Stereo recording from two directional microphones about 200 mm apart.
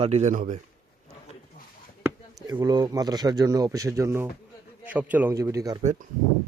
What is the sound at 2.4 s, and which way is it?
Speech, 20° right (ahead or behind).